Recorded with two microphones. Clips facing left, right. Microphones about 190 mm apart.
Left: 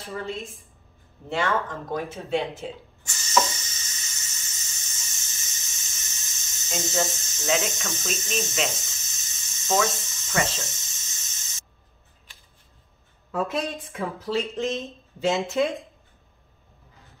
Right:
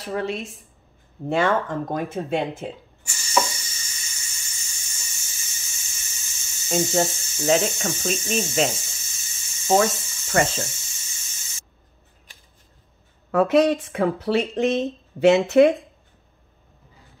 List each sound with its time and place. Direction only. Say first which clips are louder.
0.0 s speech: right 6 dB; 80° right
1.3 s speech: right 5 dB; 55° right (ahead or behind)
3.0 s hiss: even; 10° right (ahead or behind)
7.1 s speech: right 2 dB; 10° right (ahead or behind)
7.4 s speech: right 6 dB; 30° right (ahead or behind)
8.1 s speech: right 4 dB; 10° right (ahead or behind)
8.6 s a sound: right 4 dB; 10° right (ahead or behind)
10.4 s spray: right 5 dB; 10° right (ahead or behind)
13.3 s speech: right 10 dB; 75° right (ahead or behind)